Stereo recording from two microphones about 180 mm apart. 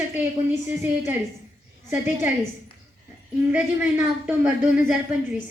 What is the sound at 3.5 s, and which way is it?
A woman's voice, 10° right (ahead or behind).